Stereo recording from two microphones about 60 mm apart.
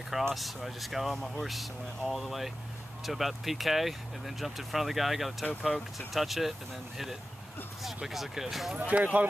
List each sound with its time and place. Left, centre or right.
0.3 s speech: centre
8.7 s speech: right